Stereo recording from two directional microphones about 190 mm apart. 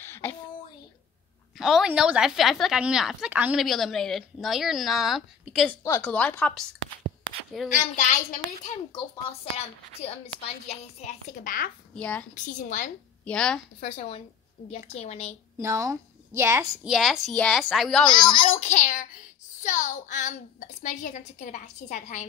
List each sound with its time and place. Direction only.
0.0 s a sound: 10° left (ahead or behind)
1.6 s a woman's voice: centre (ahead or behind)
7.7 s a woman's voice: 40° left (ahead or behind)
8.9 s a woman's voice: 30° left (ahead or behind); by 11.7 s 45° left (ahead or behind)
11.9 s a woman's voice: 5° left (ahead or behind)
12.6 s a woman's voice: 40° left (ahead or behind)
13.2 s a woman's voice: 5° left (ahead or behind)
13.8 s a woman's voice: 30° left (ahead or behind)
15.6 s a woman's voice: 15° right (ahead or behind)
16.9 s a woman's voice: centre (ahead or behind)
18.3 s a woman's voice: 30° left (ahead or behind)